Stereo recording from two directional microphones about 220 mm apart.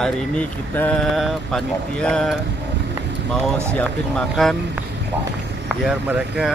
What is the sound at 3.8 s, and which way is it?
Speech, centre (ahead or behind).